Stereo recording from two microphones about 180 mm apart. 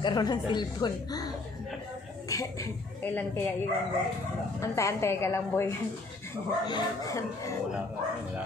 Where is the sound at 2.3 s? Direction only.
20° left (ahead or behind).